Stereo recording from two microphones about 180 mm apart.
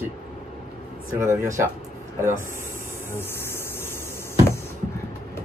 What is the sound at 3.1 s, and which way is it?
Insect, 15° left (ahead or behind).